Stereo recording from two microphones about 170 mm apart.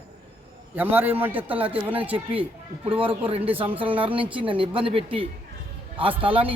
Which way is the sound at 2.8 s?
30° right (ahead or behind).